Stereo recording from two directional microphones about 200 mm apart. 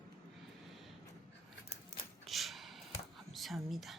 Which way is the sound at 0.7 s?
Centre (ahead or behind).